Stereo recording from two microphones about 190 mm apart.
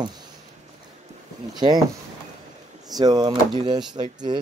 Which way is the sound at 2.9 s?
20° right (ahead or behind).